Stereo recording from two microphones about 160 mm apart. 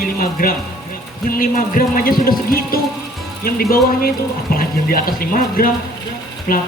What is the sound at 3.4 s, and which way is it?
Speech, 65° left (ahead or behind).